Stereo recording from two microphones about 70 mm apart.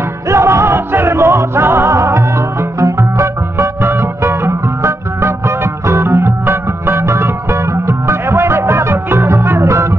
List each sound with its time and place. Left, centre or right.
0.3 s music: right